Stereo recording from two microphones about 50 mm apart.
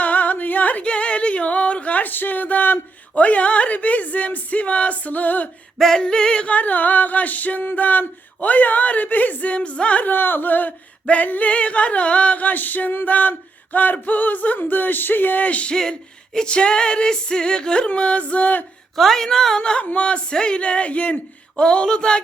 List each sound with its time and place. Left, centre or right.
0.0 s female singing: left
5.8 s music: centre
6.5 s male singing: left
10.1 s male singing: left
15.7 s music: centre
18.9 s music: centre
19.8 s speech: left